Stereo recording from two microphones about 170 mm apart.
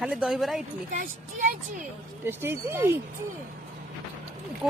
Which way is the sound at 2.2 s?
15° right (ahead or behind).